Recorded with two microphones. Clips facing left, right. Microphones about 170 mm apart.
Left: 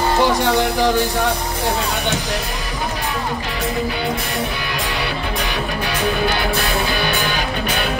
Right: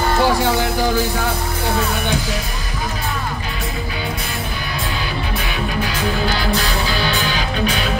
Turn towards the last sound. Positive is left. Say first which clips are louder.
# even
turn(degrees=60)  # may be behind; listen again after turning